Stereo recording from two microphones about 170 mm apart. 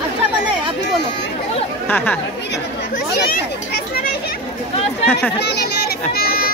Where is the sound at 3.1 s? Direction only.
70° left (ahead or behind).